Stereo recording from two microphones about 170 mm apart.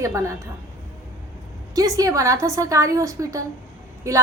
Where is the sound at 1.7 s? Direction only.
20° right (ahead or behind).